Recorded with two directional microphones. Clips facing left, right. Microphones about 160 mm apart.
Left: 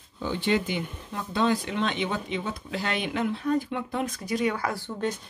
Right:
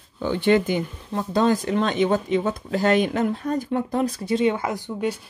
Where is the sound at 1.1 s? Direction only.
40° right (ahead or behind); by 5.2 s 15° right (ahead or behind).